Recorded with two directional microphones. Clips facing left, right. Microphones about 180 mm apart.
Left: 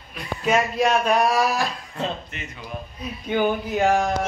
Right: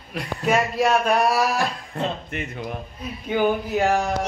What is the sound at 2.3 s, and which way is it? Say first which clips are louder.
Speech: right 7 dB; 55° right (ahead or behind).